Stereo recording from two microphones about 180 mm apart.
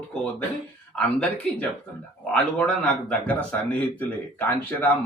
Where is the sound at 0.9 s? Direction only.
5° left (ahead or behind).